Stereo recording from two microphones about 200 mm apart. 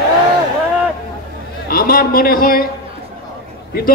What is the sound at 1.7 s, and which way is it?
Speech, 50° left (ahead or behind).